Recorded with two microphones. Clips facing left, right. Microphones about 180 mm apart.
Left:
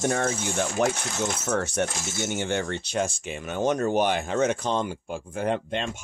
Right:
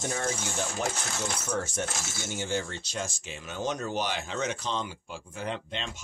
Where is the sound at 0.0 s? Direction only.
65° left (ahead or behind).